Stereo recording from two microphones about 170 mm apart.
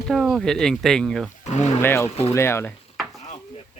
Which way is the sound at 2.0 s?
35° left (ahead or behind).